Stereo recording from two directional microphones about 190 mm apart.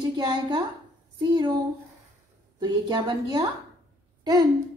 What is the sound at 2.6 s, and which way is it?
Speech, 20° right (ahead or behind).